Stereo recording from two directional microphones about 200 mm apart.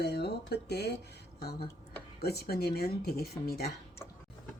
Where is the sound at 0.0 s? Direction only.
55° left (ahead or behind).